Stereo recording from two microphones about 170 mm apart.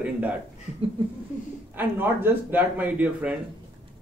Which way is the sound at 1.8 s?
10° right (ahead or behind).